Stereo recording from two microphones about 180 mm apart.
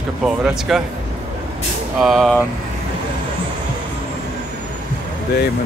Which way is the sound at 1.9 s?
Centre (ahead or behind).